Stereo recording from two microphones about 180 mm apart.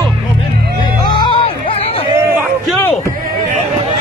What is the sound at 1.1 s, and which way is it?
Music, 25° left (ahead or behind).